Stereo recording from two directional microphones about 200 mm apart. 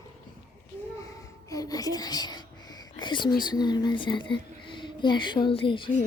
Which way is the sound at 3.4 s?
20° left (ahead or behind).